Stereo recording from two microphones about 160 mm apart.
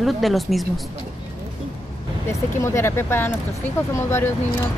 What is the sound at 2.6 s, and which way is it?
Speech, 15° left (ahead or behind).